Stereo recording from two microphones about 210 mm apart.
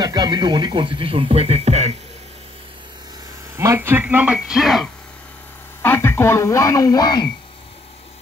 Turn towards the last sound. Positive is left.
turn(degrees=20)  # may be behind; listen again after turning